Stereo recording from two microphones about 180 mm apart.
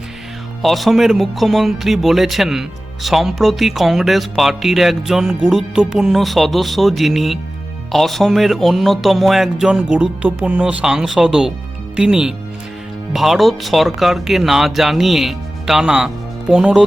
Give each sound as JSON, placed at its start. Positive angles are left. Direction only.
{"t": 0.6, "sound": "speech", "side_deg": 0}